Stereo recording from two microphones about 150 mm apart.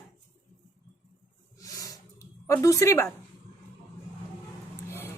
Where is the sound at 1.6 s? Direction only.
20° left (ahead or behind).